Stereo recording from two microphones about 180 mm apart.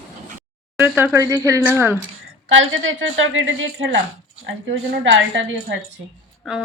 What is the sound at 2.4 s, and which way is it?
A woman's voice, 90° right.